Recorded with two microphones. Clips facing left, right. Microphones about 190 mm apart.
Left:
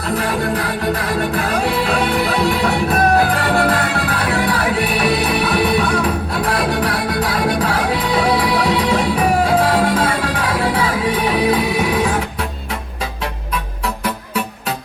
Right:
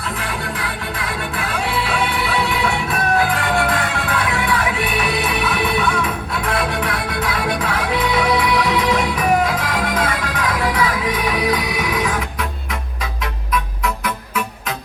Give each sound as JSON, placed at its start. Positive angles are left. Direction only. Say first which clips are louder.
{"t": 0.1, "sound": "music", "louder": "left 9 dB", "side_deg": 40}
{"t": 13.5, "sound": "music", "louder": "right 5 dB", "side_deg": 30}